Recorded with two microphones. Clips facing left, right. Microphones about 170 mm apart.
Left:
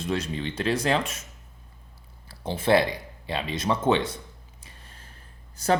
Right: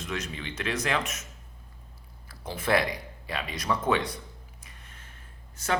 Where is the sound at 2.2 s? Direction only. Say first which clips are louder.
Left 5 dB; 30° left (ahead or behind).